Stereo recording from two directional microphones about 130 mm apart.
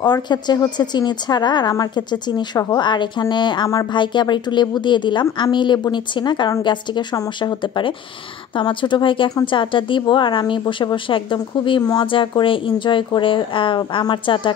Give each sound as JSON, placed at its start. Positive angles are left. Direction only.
{"t": 0.0, "sound": "a woman's voice", "side_deg": 35}